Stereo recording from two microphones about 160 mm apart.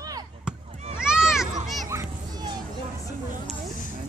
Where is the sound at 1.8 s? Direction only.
20° right (ahead or behind).